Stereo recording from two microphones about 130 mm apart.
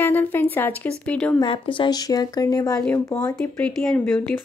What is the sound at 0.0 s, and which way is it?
Speech, 15° left (ahead or behind).